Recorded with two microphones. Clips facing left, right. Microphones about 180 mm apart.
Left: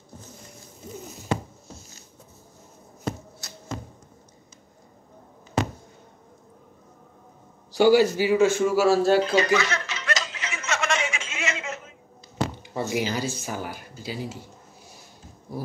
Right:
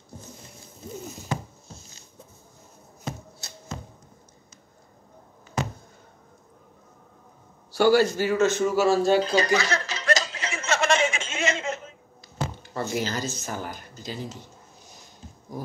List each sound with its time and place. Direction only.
3.4 s a sound: 25° right (ahead or behind)
7.7 s speech: 15° left (ahead or behind)
9.2 s chuckle: 35° right (ahead or behind)
12.6 s speech: 15° left (ahead or behind)